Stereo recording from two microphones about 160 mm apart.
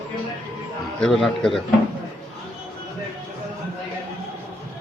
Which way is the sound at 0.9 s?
5° left (ahead or behind).